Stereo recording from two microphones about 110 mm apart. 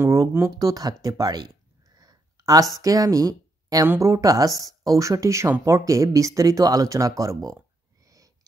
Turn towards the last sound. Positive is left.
turn(degrees=-30)  # may be behind; listen again after turning